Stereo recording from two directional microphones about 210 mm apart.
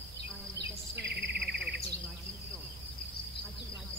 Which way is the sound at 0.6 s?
55° right (ahead or behind).